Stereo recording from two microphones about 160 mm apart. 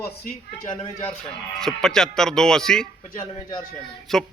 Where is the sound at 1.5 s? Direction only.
5° left (ahead or behind).